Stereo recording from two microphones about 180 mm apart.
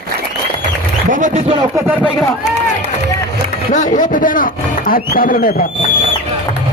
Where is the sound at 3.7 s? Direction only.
45° left (ahead or behind).